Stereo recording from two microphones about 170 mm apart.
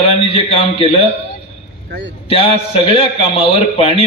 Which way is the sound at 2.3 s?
35° left (ahead or behind).